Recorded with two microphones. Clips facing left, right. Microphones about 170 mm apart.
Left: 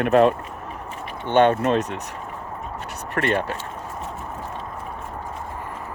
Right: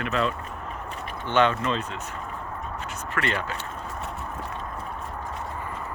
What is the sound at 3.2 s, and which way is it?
Speech, 35° left (ahead or behind).